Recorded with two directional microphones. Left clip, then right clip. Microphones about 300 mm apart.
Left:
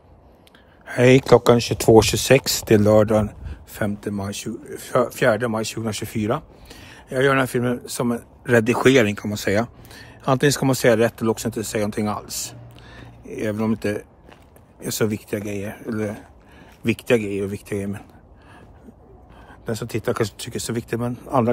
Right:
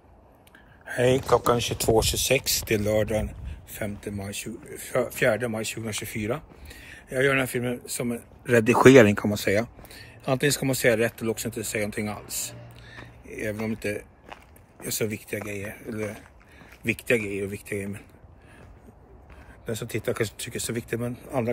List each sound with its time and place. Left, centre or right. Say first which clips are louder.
0.8 s a sound: left 6 dB; centre
1.2 s speech: left 7 dB; left
1.6 s speech: left 4 dB; centre
2.6 s speech: left 9 dB; left
3.4 s a sound: left 7 dB; centre
4.5 s speech: left 6 dB; centre
19.6 s speech: left 4 dB; centre